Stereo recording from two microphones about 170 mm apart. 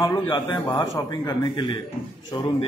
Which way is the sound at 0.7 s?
20° left (ahead or behind).